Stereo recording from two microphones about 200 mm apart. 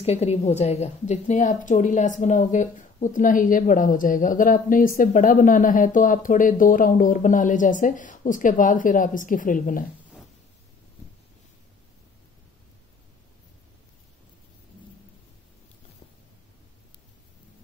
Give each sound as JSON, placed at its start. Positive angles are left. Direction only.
{"t": 0.0, "sound": "a woman's voice", "side_deg": 30}